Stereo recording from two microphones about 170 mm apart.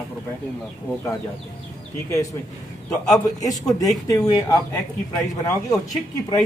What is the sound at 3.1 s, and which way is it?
Speech, 20° left (ahead or behind).